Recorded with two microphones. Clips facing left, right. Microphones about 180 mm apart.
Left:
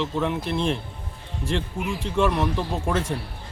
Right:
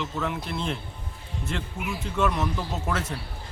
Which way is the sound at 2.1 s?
30° left (ahead or behind).